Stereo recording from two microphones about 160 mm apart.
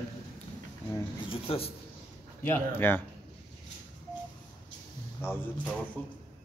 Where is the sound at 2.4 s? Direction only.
15° left (ahead or behind).